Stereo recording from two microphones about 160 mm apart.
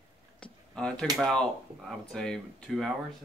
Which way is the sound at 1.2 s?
Centre (ahead or behind).